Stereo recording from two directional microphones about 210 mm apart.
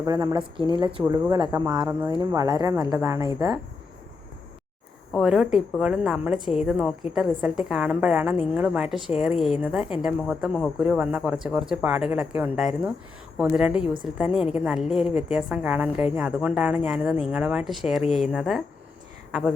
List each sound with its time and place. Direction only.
0.0 s a woman's voice: 20° right (ahead or behind)
5.1 s a woman's voice: centre (ahead or behind)